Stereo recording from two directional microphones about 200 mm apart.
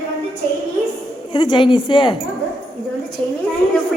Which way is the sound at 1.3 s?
25° left (ahead or behind).